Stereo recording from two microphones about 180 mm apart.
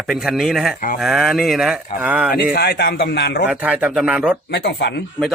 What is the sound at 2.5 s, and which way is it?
Speech, 65° left (ahead or behind).